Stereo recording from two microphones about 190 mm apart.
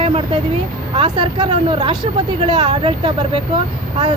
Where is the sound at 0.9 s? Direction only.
25° right (ahead or behind).